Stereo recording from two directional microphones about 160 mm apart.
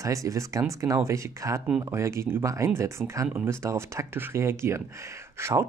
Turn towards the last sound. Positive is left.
turn(degrees=-15)  # may be behind; listen again after turning